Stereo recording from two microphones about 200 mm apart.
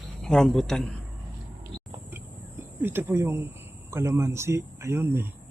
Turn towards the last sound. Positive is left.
turn(degrees=-10)  # may be behind; listen again after turning